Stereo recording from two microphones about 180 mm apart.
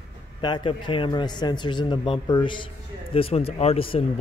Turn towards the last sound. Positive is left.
turn(degrees=30)  # may be behind; listen again after turning